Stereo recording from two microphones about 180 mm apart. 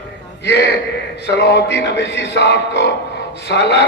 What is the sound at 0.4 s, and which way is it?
A man's voice, 70° left (ahead or behind).